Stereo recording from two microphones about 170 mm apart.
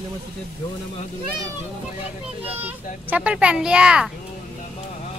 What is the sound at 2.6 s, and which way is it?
Speech, 10° right (ahead or behind).